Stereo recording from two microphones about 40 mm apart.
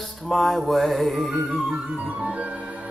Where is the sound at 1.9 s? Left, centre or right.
Right.